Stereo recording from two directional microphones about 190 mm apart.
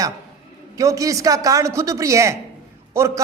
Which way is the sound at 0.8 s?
15° right (ahead or behind).